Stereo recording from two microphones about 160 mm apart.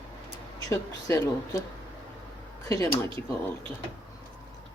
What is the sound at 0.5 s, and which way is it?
Speech, 20° left (ahead or behind).